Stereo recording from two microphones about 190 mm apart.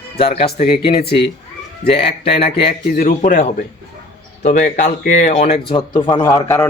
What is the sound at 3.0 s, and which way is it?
A man's voice, 45° left (ahead or behind).